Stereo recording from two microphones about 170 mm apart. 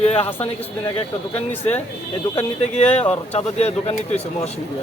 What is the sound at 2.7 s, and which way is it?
Speech, 40° left (ahead or behind).